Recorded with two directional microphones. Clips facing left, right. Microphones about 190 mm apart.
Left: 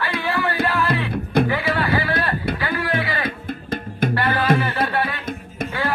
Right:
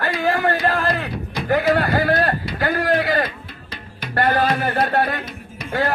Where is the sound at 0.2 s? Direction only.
45° right (ahead or behind).